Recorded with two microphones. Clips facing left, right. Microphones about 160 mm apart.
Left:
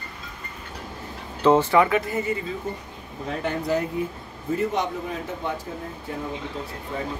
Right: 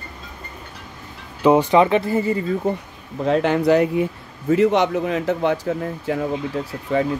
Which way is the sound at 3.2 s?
90° right.